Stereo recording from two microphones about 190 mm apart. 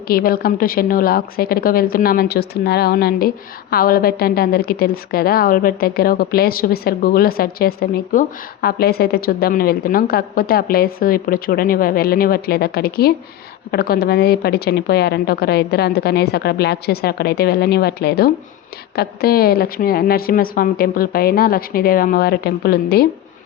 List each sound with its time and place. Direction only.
0.1 s a woman's voice: 50° left (ahead or behind)